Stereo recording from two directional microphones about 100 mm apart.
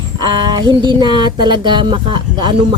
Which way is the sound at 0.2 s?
50° right (ahead or behind).